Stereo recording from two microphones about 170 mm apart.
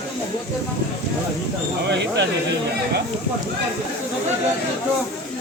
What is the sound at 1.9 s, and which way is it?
Speech, 90° right.